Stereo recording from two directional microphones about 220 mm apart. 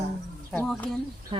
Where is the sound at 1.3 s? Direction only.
25° right (ahead or behind).